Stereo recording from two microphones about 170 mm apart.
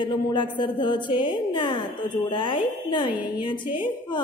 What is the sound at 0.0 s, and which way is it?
A woman's voice, 30° left (ahead or behind).